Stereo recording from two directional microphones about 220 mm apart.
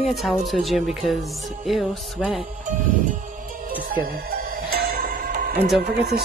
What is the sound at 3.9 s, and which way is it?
Music, 40° right (ahead or behind).